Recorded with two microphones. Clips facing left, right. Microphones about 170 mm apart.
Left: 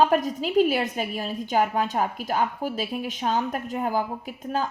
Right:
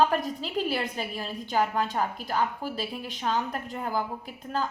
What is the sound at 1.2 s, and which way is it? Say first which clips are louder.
A woman's voice: left 3 dB; 45° left (ahead or behind).